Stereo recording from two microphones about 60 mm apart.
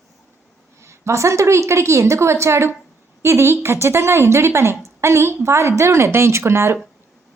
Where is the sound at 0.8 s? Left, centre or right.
Right.